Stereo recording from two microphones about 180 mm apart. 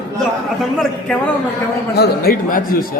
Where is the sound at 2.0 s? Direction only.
55° left (ahead or behind).